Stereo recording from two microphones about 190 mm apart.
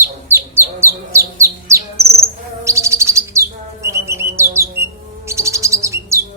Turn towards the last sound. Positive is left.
turn(degrees=-15)  # may be behind; listen again after turning